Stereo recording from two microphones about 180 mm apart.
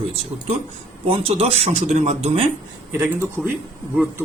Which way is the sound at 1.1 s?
30° right (ahead or behind).